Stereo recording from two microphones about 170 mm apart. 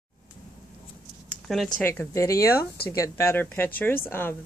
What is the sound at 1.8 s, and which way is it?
Speech, 15° left (ahead or behind).